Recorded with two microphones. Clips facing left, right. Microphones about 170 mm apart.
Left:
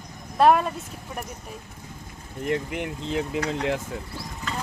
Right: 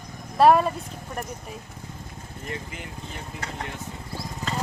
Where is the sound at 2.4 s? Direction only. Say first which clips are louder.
Left 10 dB; 70° left (ahead or behind).